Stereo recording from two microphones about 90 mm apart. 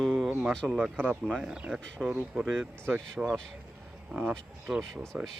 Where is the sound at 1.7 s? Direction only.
5° left (ahead or behind).